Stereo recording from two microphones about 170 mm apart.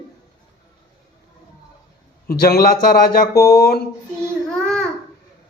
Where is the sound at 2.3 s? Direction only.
60° left (ahead or behind).